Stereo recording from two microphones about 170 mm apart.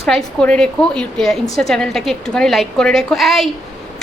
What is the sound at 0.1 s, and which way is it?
A woman's voice, 5° left (ahead or behind).